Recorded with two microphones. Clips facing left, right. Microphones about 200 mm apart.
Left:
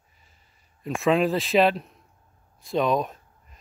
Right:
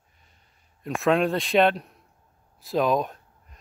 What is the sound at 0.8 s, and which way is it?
Speech, centre (ahead or behind).